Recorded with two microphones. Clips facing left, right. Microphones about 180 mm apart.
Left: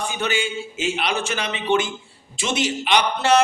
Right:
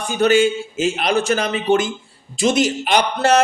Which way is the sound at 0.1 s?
40° right (ahead or behind).